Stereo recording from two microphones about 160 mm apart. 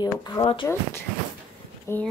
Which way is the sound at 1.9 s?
15° left (ahead or behind).